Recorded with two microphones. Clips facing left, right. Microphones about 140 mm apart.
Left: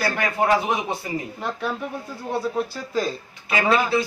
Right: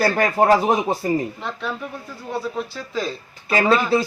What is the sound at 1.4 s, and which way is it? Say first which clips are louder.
Speech: left 1 dB; 10° left (ahead or behind).